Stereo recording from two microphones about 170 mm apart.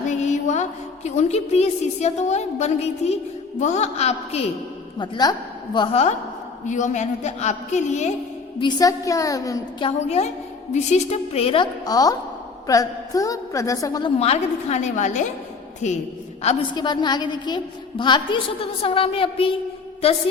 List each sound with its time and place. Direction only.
0.1 s a woman's voice: 45° left (ahead or behind)
4.9 s a woman's voice: 25° left (ahead or behind); by 8.1 s 45° left (ahead or behind)
8.6 s a woman's voice: 20° left (ahead or behind)
9.8 s a woman's voice: 40° left (ahead or behind); by 14.1 s 20° left (ahead or behind)
14.2 s a woman's voice: 40° left (ahead or behind)
16.7 s a woman's voice: 25° left (ahead or behind)